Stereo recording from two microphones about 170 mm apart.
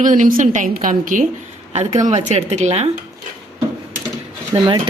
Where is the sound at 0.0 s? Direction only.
50° right (ahead or behind).